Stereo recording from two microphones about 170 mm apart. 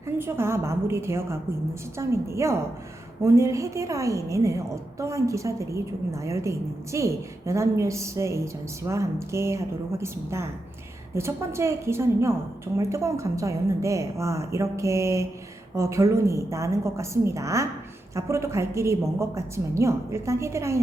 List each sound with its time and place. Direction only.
0.2 s a woman's voice: 15° right (ahead or behind)